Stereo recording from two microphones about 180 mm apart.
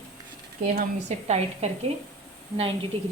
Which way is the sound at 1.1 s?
40° right (ahead or behind).